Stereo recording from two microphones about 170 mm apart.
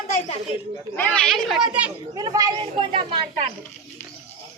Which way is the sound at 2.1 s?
20° right (ahead or behind).